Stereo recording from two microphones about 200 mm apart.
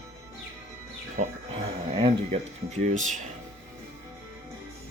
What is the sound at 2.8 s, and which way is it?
Speech, 40° right (ahead or behind).